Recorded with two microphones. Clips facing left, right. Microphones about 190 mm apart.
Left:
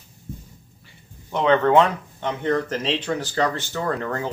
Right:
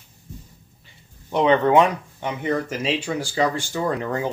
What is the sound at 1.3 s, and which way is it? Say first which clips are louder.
Speech: even; 15° right (ahead or behind).